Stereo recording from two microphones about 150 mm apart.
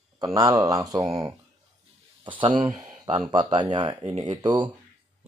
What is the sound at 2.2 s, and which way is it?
Speech, 35° right (ahead or behind).